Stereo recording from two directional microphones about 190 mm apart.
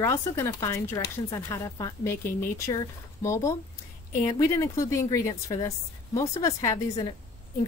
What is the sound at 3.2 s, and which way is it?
A woman's voice, 15° left (ahead or behind).